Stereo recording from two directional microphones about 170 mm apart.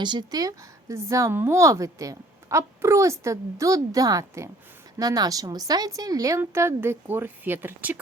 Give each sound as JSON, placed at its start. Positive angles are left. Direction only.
{"t": 0.0, "sound": "a woman's voice", "side_deg": -25}